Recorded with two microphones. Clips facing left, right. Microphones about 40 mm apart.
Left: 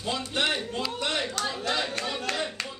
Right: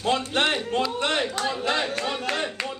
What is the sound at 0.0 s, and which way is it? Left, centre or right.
Speech, right.